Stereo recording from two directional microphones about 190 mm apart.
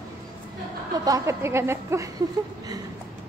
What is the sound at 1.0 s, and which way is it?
Speech, 15° right (ahead or behind).